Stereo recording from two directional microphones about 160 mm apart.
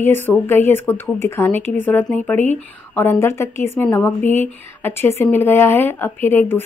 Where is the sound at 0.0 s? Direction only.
15° left (ahead or behind).